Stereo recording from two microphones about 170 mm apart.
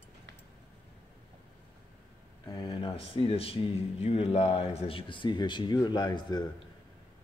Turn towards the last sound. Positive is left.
turn(degrees=25)  # may be behind; listen again after turning